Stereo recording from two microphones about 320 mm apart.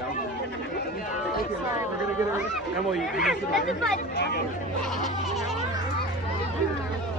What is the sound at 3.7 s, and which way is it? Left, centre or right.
Speech, left.